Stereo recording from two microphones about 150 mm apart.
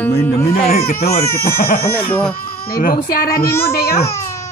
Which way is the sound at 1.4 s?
85° left.